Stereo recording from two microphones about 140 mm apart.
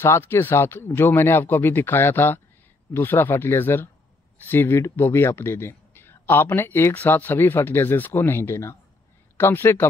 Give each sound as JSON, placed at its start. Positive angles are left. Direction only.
{"t": 0.0, "sound": "speech", "side_deg": 15}